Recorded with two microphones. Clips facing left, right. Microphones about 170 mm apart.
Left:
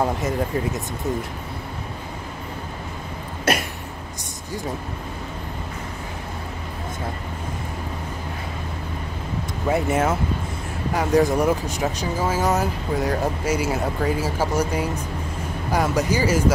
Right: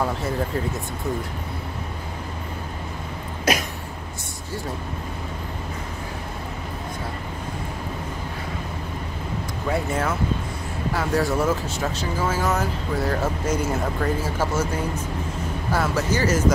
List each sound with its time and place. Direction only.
9.7 s speech: 25° left (ahead or behind)